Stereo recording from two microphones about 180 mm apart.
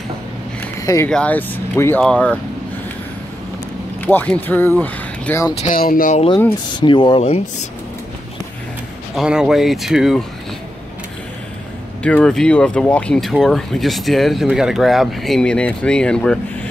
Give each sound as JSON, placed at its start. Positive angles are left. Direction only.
{"t": 0.8, "sound": "speech", "side_deg": 15}
{"t": 4.0, "sound": "speech", "side_deg": 10}
{"t": 5.5, "sound": "speech", "side_deg": 40}
{"t": 5.8, "sound": "speech", "side_deg": 50}
{"t": 6.7, "sound": "speech", "side_deg": 25}
{"t": 9.1, "sound": "speech", "side_deg": -5}
{"t": 12.0, "sound": "speech", "side_deg": 5}